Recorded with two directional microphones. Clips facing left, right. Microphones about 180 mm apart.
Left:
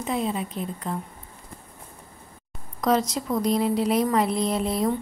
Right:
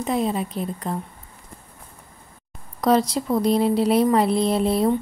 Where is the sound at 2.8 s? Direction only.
35° right (ahead or behind).